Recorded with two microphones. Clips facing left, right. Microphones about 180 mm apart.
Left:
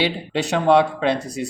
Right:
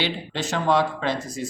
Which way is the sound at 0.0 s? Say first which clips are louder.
Left 5 dB; 65° left (ahead or behind).